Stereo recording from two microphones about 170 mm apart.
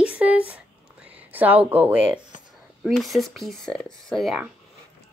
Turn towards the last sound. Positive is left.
turn(degrees=0)  # may be behind; listen again after turning